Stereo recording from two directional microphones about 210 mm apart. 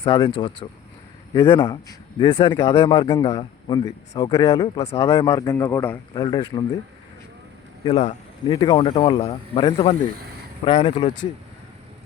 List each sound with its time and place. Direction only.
0.0 s speech: 20° left (ahead or behind)
7.9 s speech: 25° left (ahead or behind)